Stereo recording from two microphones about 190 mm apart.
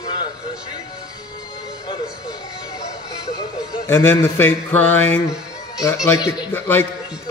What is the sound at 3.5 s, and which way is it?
A man's voice, 15° left (ahead or behind).